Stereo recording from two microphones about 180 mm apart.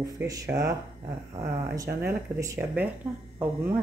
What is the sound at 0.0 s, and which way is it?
Speech, 20° right (ahead or behind).